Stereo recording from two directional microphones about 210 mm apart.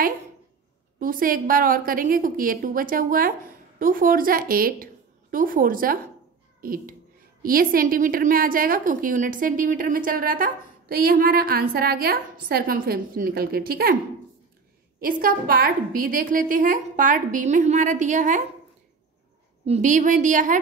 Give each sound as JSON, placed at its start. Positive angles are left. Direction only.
{"t": 0.9, "sound": "a woman's voice", "side_deg": -40}
{"t": 15.0, "sound": "a woman's voice", "side_deg": -40}
{"t": 19.6, "sound": "a woman's voice", "side_deg": -35}